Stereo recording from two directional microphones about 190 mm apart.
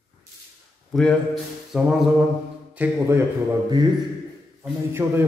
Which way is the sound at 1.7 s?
5° right (ahead or behind).